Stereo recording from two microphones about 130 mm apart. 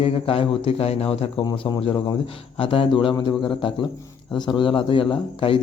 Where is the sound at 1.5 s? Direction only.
35° left (ahead or behind).